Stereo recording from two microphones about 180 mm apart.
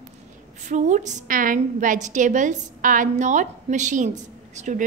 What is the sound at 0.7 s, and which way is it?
A woman's voice, 40° right (ahead or behind).